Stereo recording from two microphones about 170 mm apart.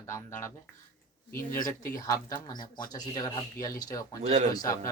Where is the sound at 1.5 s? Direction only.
55° left (ahead or behind).